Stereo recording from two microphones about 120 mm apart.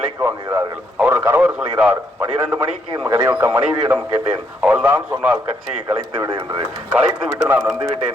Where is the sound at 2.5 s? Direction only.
25° right (ahead or behind).